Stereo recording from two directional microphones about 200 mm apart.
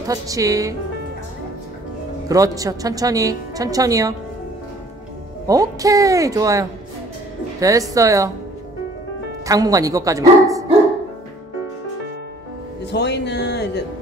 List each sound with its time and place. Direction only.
0.0 s speech: 15° right (ahead or behind)
2.2 s speech: 15° right (ahead or behind)
5.5 s speech: 15° right (ahead or behind)
7.9 s speech: 15° right (ahead or behind)
9.5 s speech: 15° right (ahead or behind)
12.9 s speech: 55° left (ahead or behind)